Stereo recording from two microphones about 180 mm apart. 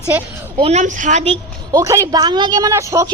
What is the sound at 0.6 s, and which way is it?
Speech, 40° right (ahead or behind).